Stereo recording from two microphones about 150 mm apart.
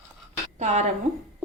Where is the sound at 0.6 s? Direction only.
50° right (ahead or behind).